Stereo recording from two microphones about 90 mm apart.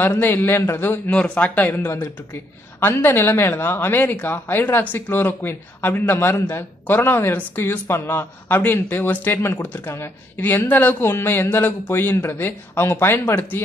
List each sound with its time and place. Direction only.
0.0 s speech: 25° left (ahead or behind)